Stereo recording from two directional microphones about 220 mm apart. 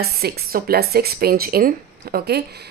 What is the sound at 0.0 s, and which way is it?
A woman's voice, 45° right (ahead or behind).